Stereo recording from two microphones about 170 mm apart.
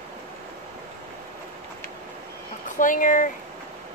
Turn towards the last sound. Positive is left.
turn(degrees=50)  # may be behind; listen again after turning